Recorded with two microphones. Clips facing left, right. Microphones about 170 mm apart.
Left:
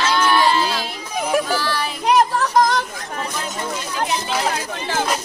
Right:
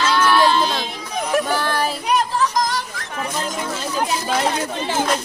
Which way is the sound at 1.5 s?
55° right (ahead or behind).